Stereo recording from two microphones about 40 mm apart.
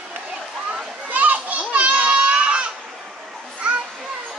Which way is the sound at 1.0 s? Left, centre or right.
Right.